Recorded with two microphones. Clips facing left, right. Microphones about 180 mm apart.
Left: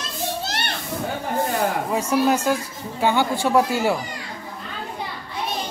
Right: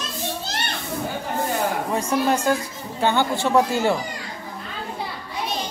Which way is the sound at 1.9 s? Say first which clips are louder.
Left 2 dB; 5° left (ahead or behind).